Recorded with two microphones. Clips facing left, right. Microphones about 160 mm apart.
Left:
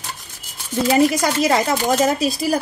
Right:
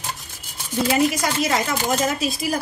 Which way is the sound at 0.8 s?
40° left (ahead or behind).